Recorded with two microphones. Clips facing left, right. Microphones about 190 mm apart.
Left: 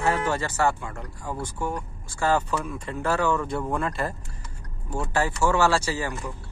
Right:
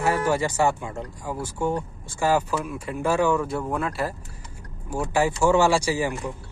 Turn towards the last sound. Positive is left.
turn(degrees=-15)  # may be behind; listen again after turning